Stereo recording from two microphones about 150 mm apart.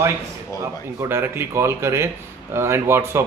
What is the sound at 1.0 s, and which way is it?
A man's voice, 15° right (ahead or behind).